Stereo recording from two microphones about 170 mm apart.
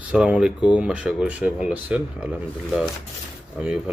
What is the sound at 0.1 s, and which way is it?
Speech, 5° right (ahead or behind).